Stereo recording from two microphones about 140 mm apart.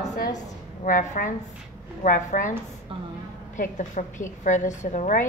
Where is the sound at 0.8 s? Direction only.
75° left (ahead or behind).